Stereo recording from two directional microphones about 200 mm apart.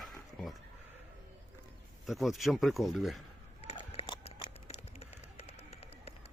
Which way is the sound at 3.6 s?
30° left (ahead or behind).